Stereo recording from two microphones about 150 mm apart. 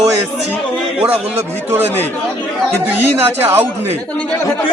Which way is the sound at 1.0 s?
10° right (ahead or behind).